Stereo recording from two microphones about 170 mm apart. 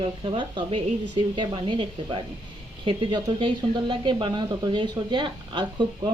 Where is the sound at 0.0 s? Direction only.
30° right (ahead or behind).